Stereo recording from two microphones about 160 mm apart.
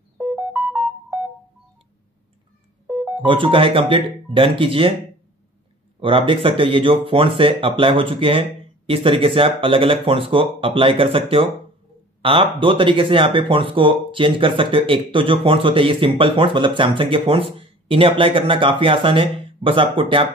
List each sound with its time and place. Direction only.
0.2 s music: 10° right (ahead or behind)
2.9 s music: 10° right (ahead or behind)
3.3 s speech: 30° right (ahead or behind)
5.9 s speech: 35° right (ahead or behind)